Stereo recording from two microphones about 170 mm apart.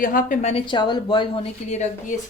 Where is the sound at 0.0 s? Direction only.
50° left (ahead or behind).